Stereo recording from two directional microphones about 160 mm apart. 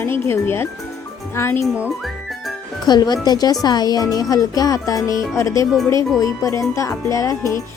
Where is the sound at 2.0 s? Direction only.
Centre (ahead or behind).